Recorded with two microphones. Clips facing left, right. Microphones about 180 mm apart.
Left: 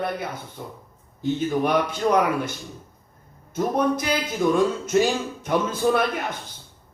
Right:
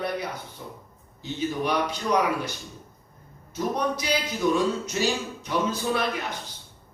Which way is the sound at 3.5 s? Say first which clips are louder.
Left 5 dB; 50° left (ahead or behind).